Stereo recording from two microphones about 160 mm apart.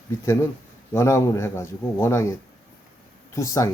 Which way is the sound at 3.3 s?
20° left (ahead or behind).